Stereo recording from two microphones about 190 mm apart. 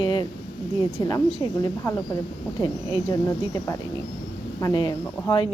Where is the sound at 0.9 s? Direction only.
25° left (ahead or behind).